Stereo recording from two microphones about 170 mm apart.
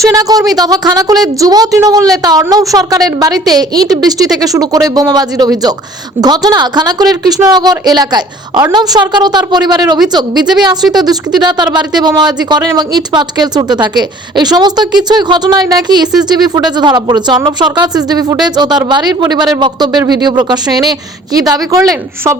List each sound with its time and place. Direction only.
0.0 s a woman's voice: 20° right (ahead or behind)